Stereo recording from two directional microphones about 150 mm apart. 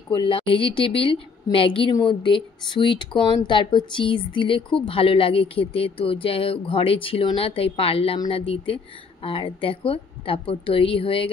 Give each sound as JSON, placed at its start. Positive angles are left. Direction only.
{"t": 0.1, "sound": "speech", "side_deg": 35}